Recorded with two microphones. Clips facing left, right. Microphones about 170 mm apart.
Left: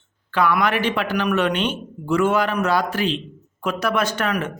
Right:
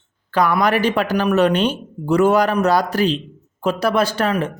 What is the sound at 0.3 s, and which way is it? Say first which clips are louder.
Speech: right 3 dB; 40° right (ahead or behind).